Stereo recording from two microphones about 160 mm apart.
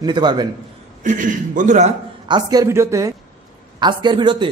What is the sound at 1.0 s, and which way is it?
Speech, 55° right (ahead or behind).